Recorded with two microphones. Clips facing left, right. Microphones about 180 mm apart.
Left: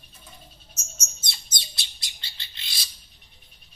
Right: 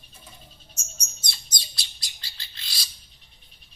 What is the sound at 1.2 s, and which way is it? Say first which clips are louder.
Bird: right 1 dB; 25° left (ahead or behind).